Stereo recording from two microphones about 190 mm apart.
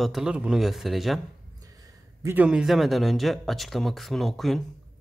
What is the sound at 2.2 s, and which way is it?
Speech, 10° right (ahead or behind).